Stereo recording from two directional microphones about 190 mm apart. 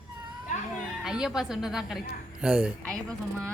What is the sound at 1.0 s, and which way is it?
A woman's voice, 5° right (ahead or behind).